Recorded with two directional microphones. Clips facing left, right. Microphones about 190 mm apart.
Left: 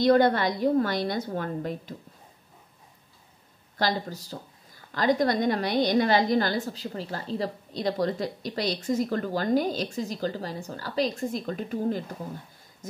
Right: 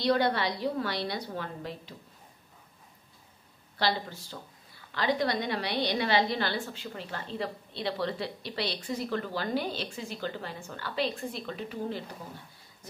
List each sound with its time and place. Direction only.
0.0 s a woman's voice: 45° left (ahead or behind)
3.7 s a woman's voice: 40° left (ahead or behind)